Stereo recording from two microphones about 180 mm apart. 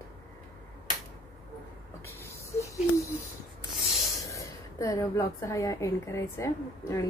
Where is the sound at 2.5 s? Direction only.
15° left (ahead or behind).